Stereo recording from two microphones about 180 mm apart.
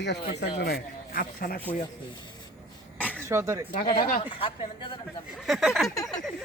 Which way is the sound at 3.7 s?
55° left (ahead or behind).